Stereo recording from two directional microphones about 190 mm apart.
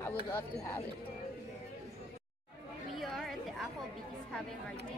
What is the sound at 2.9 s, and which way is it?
Chatter, centre (ahead or behind).